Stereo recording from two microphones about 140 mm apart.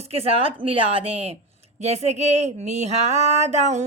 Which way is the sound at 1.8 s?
50° right (ahead or behind).